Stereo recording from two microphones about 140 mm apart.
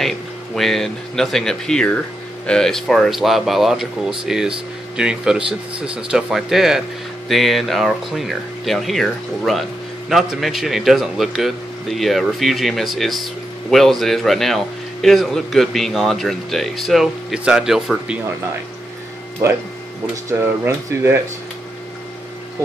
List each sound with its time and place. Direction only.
0.6 s speech: centre (ahead or behind)
20.2 s speech: 20° right (ahead or behind)